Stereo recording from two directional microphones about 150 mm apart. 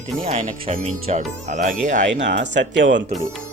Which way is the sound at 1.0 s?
50° right (ahead or behind).